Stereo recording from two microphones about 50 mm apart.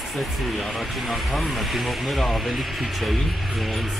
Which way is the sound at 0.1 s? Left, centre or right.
Centre.